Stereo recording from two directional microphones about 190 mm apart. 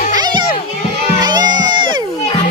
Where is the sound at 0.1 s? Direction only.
20° right (ahead or behind).